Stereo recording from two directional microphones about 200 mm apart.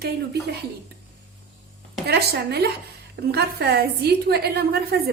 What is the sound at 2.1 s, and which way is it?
A woman's voice, 55° right (ahead or behind).